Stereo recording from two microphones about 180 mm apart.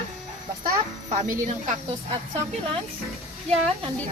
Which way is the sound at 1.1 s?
45° right (ahead or behind).